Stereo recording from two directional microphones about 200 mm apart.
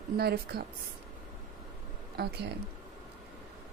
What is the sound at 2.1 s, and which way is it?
Speech, 55° right (ahead or behind).